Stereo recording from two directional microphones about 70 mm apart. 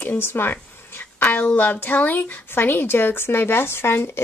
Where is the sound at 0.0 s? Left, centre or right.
Left.